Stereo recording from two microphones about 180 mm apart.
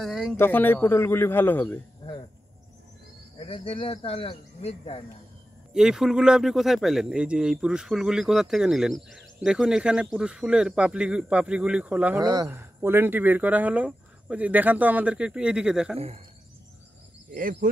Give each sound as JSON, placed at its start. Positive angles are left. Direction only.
{"t": 0.0, "sound": "a man's voice", "side_deg": 0}
{"t": 3.3, "sound": "speech", "side_deg": 30}
{"t": 5.7, "sound": "speech", "side_deg": -5}
{"t": 12.2, "sound": "speech", "side_deg": -20}
{"t": 17.3, "sound": "speech", "side_deg": -50}